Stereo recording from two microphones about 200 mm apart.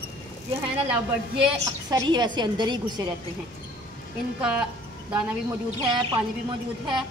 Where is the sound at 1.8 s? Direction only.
20° right (ahead or behind).